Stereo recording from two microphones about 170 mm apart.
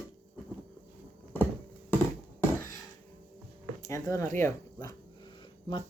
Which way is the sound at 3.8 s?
15° left (ahead or behind).